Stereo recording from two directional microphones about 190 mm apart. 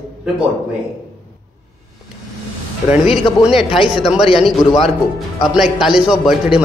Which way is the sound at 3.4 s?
Centre (ahead or behind).